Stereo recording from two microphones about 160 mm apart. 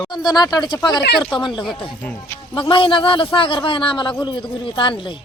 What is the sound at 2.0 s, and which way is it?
Speech, 15° left (ahead or behind).